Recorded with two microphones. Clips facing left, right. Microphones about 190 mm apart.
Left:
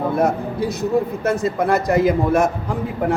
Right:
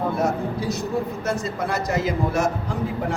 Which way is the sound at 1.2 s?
55° left (ahead or behind).